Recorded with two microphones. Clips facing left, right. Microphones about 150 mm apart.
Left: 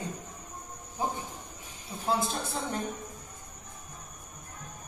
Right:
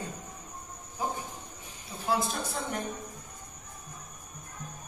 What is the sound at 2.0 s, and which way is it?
Speech, 25° left (ahead or behind).